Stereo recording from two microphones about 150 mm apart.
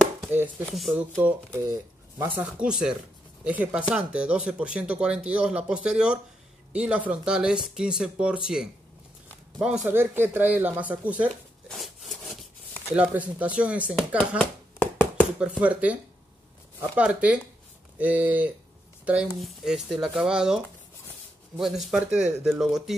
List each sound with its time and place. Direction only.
0.3 s speech: 10° right (ahead or behind)
0.7 s speech: centre (ahead or behind)
1.1 s speech: 20° right (ahead or behind)
9.8 s speech: 15° right (ahead or behind)
11.7 s sawing: centre (ahead or behind)
12.9 s speech: 10° right (ahead or behind)
14.4 s a sound: 10° left (ahead or behind)
15.3 s speech: 5° right (ahead or behind)